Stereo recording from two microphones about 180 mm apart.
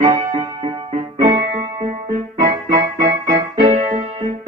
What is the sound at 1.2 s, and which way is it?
Music, 50° right (ahead or behind).